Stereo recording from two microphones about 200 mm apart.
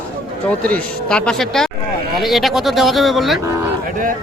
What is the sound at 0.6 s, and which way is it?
A man's voice, 5° left (ahead or behind).